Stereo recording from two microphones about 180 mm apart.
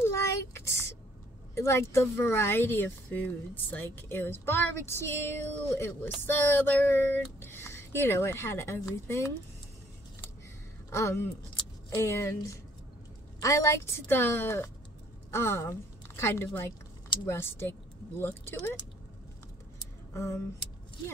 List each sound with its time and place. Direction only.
0.0 s a sound: 15° left (ahead or behind)
1.5 s speech: 15° left (ahead or behind)
10.9 s a woman's voice: 15° left (ahead or behind)